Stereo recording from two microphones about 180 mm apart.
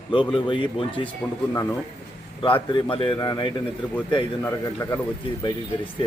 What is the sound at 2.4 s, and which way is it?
Speech, 30° left (ahead or behind).